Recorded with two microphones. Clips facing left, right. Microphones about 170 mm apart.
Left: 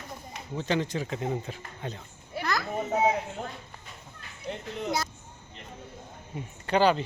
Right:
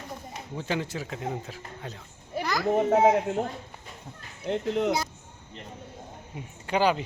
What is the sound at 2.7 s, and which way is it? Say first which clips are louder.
Speech: right 6 dB; 90° right.